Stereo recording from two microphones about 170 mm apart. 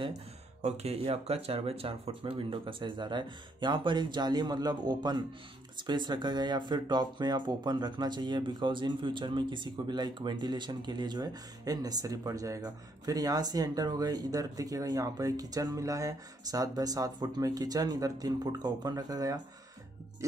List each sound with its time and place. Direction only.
0.6 s speech: 40° right (ahead or behind); by 19.4 s 20° right (ahead or behind)